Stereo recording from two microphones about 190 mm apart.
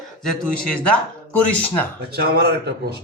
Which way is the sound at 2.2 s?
55° right (ahead or behind).